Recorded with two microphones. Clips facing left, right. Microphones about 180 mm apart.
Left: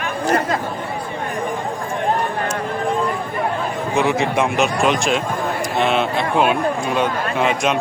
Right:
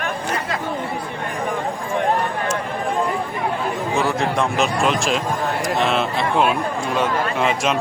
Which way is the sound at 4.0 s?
20° left (ahead or behind).